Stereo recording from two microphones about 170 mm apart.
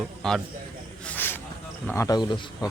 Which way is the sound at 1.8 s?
15° left (ahead or behind).